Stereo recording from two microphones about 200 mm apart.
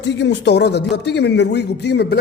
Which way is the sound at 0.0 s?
60° left (ahead or behind).